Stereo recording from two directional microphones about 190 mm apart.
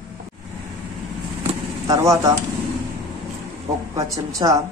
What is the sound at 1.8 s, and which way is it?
Speech, 15° right (ahead or behind).